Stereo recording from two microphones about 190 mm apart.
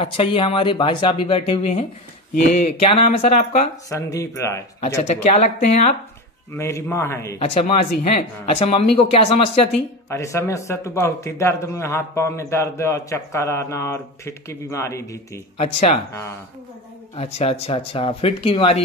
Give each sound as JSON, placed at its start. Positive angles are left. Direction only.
{"t": 0.0, "sound": "speech", "side_deg": 30}
{"t": 3.2, "sound": "speech", "side_deg": 40}
{"t": 3.9, "sound": "a man's voice", "side_deg": 15}
{"t": 5.0, "sound": "speech", "side_deg": 35}
{"t": 6.5, "sound": "a man's voice", "side_deg": 15}
{"t": 7.3, "sound": "speech", "side_deg": 30}
{"t": 10.0, "sound": "a man's voice", "side_deg": 15}
{"t": 15.5, "sound": "speech", "side_deg": 30}
{"t": 16.1, "sound": "a man's voice", "side_deg": 15}
{"t": 17.1, "sound": "speech", "side_deg": 35}